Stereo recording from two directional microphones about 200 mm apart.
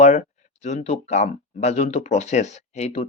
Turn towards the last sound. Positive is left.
turn(degrees=35)  # may be behind; listen again after turning